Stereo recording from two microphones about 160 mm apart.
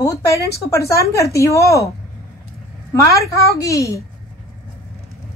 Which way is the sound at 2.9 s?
20° left (ahead or behind).